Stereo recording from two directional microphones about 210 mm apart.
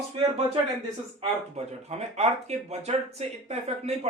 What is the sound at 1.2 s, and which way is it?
A man's voice, 30° right (ahead or behind).